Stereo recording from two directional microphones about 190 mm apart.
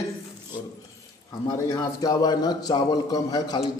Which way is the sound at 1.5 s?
20° left (ahead or behind).